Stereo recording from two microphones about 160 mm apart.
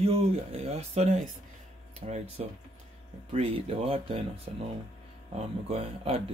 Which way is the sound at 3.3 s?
35° right (ahead or behind).